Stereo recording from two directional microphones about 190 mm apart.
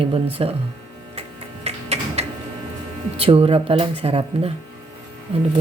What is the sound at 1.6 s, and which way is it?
Printer, 35° right (ahead or behind).